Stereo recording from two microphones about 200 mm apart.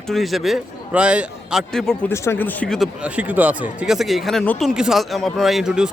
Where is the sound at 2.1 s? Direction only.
10° left (ahead or behind).